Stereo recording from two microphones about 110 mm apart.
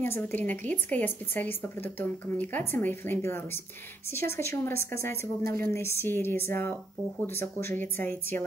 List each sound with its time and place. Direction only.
0.0 s a woman's voice: 20° left (ahead or behind)